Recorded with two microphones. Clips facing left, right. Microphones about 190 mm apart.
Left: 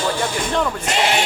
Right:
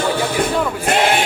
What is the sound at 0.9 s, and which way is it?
Speech, 55° right (ahead or behind).